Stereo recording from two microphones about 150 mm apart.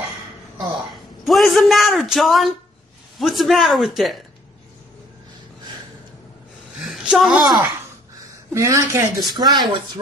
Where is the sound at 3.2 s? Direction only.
Centre (ahead or behind).